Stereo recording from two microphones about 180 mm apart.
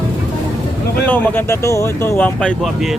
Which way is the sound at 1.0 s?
10° left (ahead or behind).